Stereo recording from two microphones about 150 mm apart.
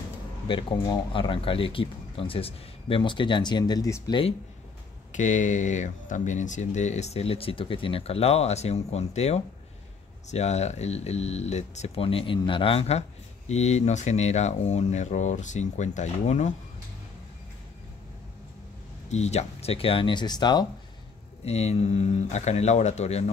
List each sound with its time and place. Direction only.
0.5 s speech: 35° left (ahead or behind)
5.1 s speech: 55° left (ahead or behind)
19.0 s speech: 45° left (ahead or behind); by 20.6 s 30° left (ahead or behind)
21.5 s speech: 45° left (ahead or behind)